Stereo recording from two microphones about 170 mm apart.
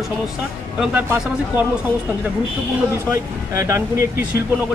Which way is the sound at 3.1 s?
15° right (ahead or behind).